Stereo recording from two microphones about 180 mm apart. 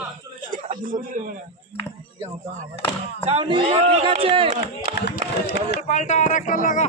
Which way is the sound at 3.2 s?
30° right (ahead or behind).